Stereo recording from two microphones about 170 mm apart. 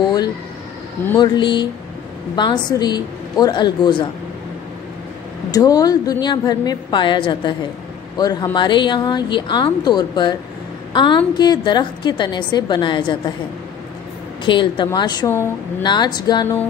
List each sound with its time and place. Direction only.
1.1 s a woman's voice: 25° left (ahead or behind)
5.5 s a woman's voice: 20° left (ahead or behind)
14.4 s a woman's voice: 30° left (ahead or behind)
15.8 s a woman's voice: 25° left (ahead or behind)